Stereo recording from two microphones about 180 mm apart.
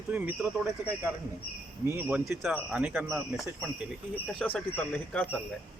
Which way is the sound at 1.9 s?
10° right (ahead or behind).